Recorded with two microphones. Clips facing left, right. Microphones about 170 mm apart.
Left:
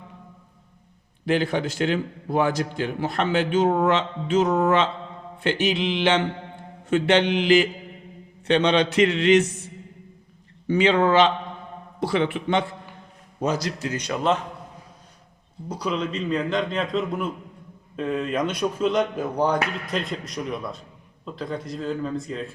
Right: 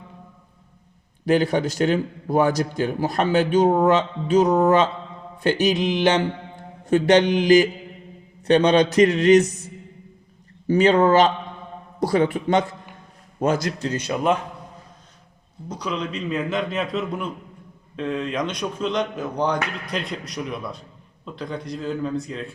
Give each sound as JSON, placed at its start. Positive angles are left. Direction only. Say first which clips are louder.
{"t": 1.2, "sound": "a man's voice", "louder": "right 3 dB", "side_deg": -40}
{"t": 10.7, "sound": "a man's voice", "louder": "right 3 dB", "side_deg": -40}
{"t": 13.4, "sound": "a man's voice", "louder": "right 3 dB", "side_deg": -50}
{"t": 15.7, "sound": "a man's voice", "louder": "left 1 dB", "side_deg": 5}